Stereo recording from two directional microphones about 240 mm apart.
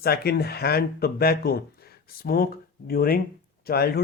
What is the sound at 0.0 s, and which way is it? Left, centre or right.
Speech, left.